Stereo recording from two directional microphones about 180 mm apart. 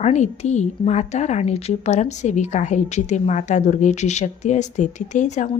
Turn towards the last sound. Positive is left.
turn(degrees=45)  # may be behind; listen again after turning